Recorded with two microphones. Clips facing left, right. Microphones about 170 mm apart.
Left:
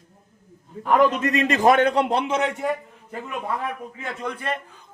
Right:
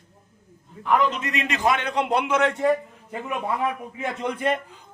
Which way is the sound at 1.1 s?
40° left (ahead or behind).